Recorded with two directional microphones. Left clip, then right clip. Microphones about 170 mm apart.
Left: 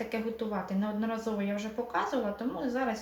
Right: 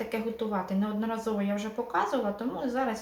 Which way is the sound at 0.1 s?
15° right (ahead or behind).